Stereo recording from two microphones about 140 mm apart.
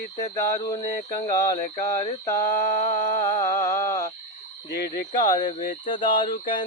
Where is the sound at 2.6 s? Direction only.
60° left (ahead or behind).